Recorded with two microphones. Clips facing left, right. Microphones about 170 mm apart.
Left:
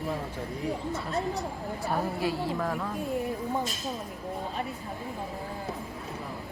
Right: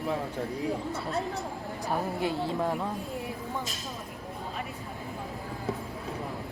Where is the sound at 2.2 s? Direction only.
25° right (ahead or behind).